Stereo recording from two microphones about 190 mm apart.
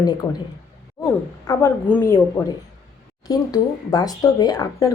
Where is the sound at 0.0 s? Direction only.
20° left (ahead or behind).